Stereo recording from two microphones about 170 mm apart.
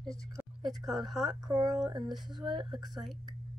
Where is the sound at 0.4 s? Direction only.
Centre (ahead or behind).